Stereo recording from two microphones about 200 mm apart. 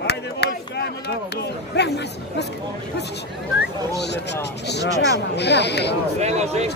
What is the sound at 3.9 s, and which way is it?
Speech, 55° left (ahead or behind).